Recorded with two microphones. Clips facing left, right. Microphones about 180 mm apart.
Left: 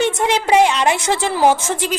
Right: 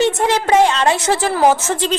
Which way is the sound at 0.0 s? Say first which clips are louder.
Right 2 dB; 15° left (ahead or behind).